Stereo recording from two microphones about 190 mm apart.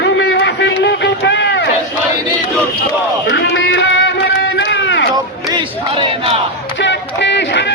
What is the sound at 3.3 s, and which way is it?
Run, 75° left (ahead or behind).